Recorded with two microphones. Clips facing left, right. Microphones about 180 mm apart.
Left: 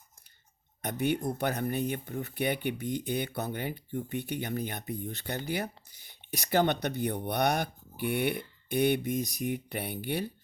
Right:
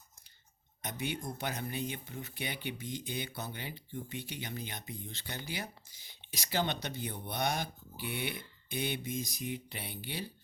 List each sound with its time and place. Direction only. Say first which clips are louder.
0.8 s speech: left 9 dB; 60° left (ahead or behind)